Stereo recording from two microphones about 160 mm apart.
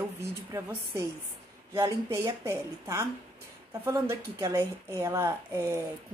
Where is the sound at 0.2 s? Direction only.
15° right (ahead or behind).